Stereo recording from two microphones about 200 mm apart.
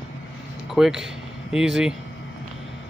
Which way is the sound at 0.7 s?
Centre (ahead or behind).